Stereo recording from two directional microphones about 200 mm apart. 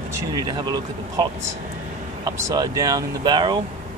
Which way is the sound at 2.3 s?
15° right (ahead or behind).